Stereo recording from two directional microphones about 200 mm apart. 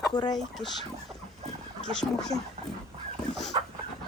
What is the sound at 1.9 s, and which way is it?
Speech, 5° left (ahead or behind).